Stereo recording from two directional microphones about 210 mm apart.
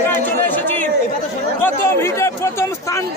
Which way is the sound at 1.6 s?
10° left (ahead or behind).